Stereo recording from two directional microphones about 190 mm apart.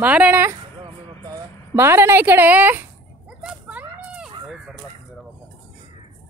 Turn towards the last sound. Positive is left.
turn(degrees=0)  # may be behind; listen again after turning